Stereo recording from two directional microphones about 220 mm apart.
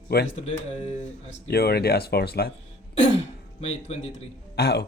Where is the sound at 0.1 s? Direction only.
45° left (ahead or behind).